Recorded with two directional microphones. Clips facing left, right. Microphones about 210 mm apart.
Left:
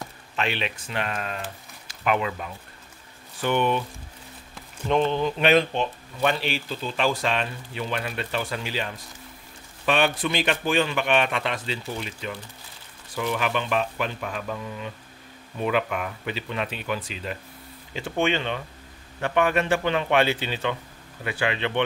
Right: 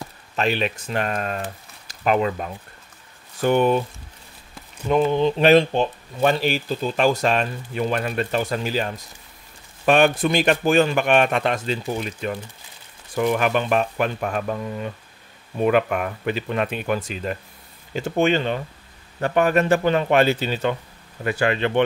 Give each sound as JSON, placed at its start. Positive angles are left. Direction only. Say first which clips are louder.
{"t": 0.4, "sound": "speech", "louder": "right 6 dB", "side_deg": -40}
{"t": 4.8, "sound": "speech", "louder": "right 3 dB", "side_deg": -5}
{"t": 5.4, "sound": "speech", "louder": "right 5 dB", "side_deg": -35}